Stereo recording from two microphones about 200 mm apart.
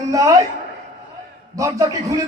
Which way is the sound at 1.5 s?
15° right (ahead or behind).